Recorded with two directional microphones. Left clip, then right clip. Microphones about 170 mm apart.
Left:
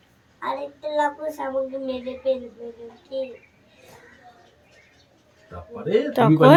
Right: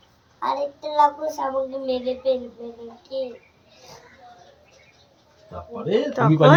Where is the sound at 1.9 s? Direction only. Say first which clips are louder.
Right 4 dB; centre (ahead or behind).